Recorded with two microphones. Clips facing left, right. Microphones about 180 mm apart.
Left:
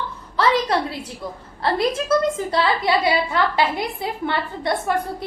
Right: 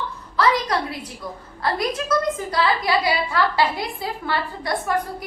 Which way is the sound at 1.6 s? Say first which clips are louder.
Left 3 dB; 25° left (ahead or behind).